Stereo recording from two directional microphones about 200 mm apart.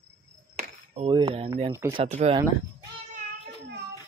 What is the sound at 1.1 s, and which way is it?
Speech, 25° right (ahead or behind).